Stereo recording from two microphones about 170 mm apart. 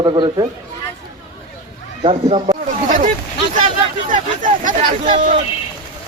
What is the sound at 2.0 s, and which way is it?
Speech, 30° right (ahead or behind).